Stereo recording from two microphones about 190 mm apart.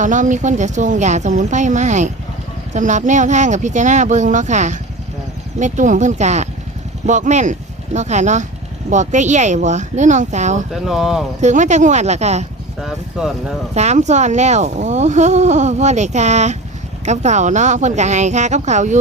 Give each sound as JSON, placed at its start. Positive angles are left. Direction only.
{"t": 0.0, "sound": "speech", "side_deg": -40}
{"t": 10.8, "sound": "speech", "side_deg": -5}
{"t": 11.3, "sound": "speech", "side_deg": -40}
{"t": 12.8, "sound": "speech", "side_deg": 0}
{"t": 13.7, "sound": "speech", "side_deg": -35}